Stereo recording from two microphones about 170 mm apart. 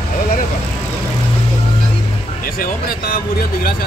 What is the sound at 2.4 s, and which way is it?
Speech, 60° left (ahead or behind).